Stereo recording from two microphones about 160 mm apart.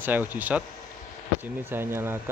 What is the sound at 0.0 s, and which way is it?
Speech, 10° right (ahead or behind).